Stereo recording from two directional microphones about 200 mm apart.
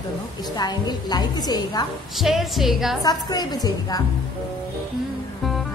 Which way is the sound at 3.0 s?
20° left (ahead or behind).